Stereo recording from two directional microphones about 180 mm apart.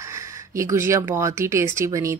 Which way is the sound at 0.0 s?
15° right (ahead or behind).